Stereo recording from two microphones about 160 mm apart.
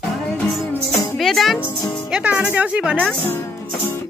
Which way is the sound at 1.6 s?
20° left (ahead or behind).